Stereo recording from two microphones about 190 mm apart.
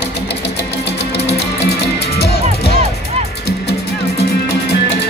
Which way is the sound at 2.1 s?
60° left (ahead or behind).